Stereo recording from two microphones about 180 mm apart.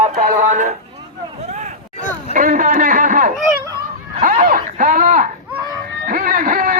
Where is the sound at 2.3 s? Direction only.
45° right (ahead or behind).